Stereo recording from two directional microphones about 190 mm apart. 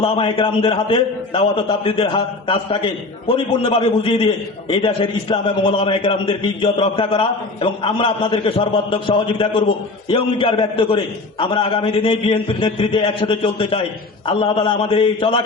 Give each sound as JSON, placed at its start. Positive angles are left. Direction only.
{"t": 0.0, "sound": "a man's voice", "side_deg": 30}
{"t": 5.3, "sound": "a man's voice", "side_deg": 25}